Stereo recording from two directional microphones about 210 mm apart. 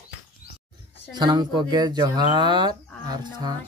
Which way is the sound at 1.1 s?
20° right (ahead or behind).